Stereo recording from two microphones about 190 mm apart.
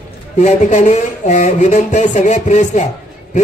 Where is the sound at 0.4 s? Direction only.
40° left (ahead or behind).